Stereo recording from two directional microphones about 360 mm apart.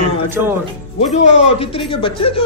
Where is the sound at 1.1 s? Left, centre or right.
Centre.